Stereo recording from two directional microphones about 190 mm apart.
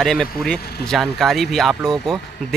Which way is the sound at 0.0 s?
5° left (ahead or behind).